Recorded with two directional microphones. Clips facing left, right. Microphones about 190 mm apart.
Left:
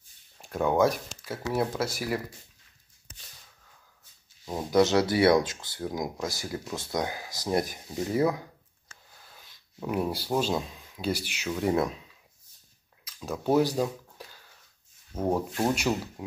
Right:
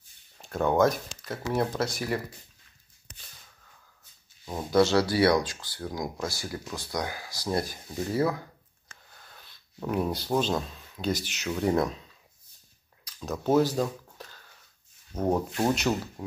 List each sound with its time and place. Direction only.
0.4 s speech: 10° left (ahead or behind)
4.5 s speech: 15° left (ahead or behind)
9.2 s speech: 5° left (ahead or behind)
13.0 s a sound: 10° left (ahead or behind)
15.1 s speech: 5° left (ahead or behind)
16.2 s a sound: 10° left (ahead or behind)